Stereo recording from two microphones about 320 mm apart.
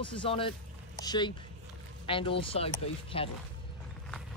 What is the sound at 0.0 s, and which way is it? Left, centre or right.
Speech, centre.